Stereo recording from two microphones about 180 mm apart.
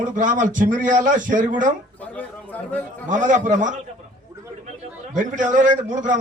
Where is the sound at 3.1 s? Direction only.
45° right (ahead or behind).